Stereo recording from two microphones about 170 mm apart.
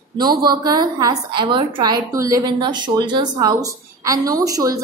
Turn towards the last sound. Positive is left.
turn(degrees=-20)  # may be behind; listen again after turning